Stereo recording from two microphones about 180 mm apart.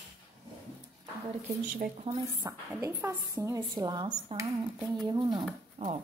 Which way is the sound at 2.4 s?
20° right (ahead or behind).